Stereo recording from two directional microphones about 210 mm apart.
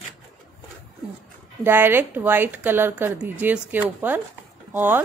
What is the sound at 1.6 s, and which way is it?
A woman's voice, 10° right (ahead or behind).